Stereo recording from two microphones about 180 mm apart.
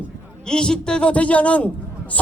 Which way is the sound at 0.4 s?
5° left (ahead or behind).